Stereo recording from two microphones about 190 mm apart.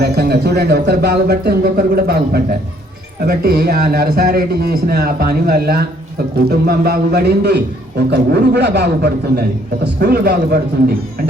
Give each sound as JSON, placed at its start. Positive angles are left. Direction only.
{"t": 0.0, "sound": "a man's voice", "side_deg": -60}
{"t": 10.0, "sound": "speech", "side_deg": -55}